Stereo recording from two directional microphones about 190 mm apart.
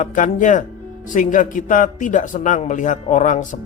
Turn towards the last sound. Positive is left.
turn(degrees=40)  # may be behind; listen again after turning